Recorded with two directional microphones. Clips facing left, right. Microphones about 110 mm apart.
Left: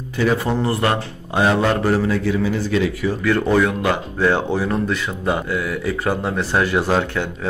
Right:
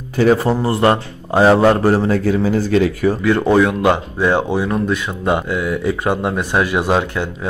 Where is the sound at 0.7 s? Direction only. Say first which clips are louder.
Right 5 dB; 30° right (ahead or behind); by 3.2 s 45° right (ahead or behind).